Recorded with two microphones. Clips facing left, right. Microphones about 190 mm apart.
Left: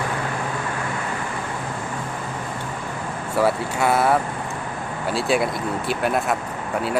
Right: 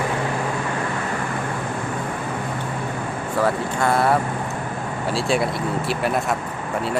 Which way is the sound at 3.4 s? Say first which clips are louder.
Left 1 dB; 5° left (ahead or behind).